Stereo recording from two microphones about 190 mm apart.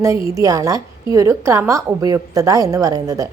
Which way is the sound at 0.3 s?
15° right (ahead or behind).